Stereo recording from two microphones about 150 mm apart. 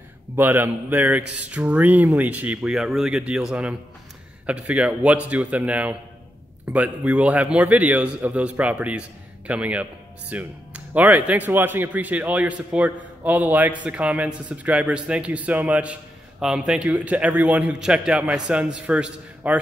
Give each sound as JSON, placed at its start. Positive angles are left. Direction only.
{"t": 0.4, "sound": "speech", "side_deg": -15}